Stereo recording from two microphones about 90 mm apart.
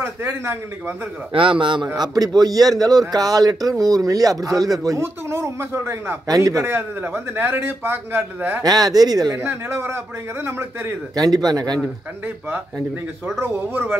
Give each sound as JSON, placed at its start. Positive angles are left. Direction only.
{"t": 0.0, "sound": "a man's voice", "side_deg": -25}
{"t": 1.3, "sound": "a man's voice", "side_deg": -70}
{"t": 2.0, "sound": "speech", "side_deg": -45}
{"t": 6.2, "sound": "speech", "side_deg": -40}
{"t": 6.6, "sound": "a man's voice", "side_deg": -25}
{"t": 8.6, "sound": "speech", "side_deg": -45}
{"t": 9.4, "sound": "a man's voice", "side_deg": -25}
{"t": 11.1, "sound": "speech", "side_deg": -50}
{"t": 13.4, "sound": "a man's voice", "side_deg": -25}